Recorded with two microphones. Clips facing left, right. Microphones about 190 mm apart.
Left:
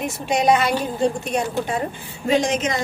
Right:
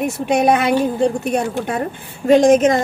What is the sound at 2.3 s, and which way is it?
Speech, 50° right (ahead or behind).